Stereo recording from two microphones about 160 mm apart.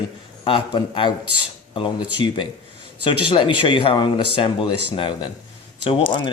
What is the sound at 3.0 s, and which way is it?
Speech, 30° left (ahead or behind).